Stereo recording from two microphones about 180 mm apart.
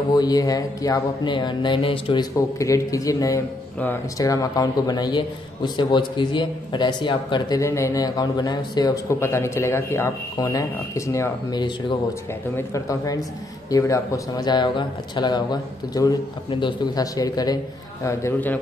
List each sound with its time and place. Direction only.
0.1 s a man's voice: 20° left (ahead or behind)
2.3 s a man's voice: 15° left (ahead or behind)